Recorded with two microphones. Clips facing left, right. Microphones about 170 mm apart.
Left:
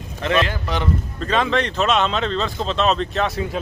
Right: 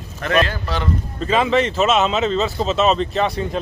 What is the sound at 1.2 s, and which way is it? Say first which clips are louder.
A man's voice: right 3 dB; 5° right (ahead or behind).